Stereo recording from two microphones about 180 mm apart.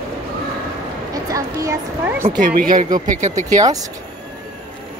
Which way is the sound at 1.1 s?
20° right (ahead or behind).